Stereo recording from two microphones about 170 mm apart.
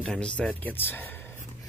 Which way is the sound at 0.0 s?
5° left (ahead or behind).